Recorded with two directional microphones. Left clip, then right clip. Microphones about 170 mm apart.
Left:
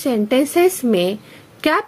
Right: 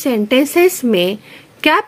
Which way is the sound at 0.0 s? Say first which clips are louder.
Right 3 dB; 15° right (ahead or behind).